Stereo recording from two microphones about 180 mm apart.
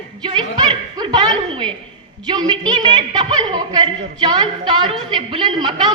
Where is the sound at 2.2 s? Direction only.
25° right (ahead or behind).